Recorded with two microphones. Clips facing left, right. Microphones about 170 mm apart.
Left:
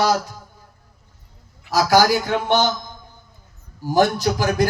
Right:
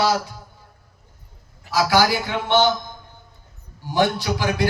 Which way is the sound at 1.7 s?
45° left (ahead or behind).